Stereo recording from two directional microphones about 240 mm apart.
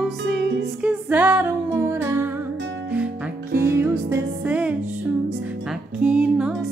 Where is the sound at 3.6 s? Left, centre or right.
Centre.